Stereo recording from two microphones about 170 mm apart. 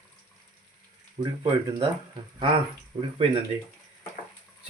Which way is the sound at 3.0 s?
30° right (ahead or behind).